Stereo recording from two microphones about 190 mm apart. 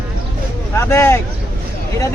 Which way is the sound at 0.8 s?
15° left (ahead or behind).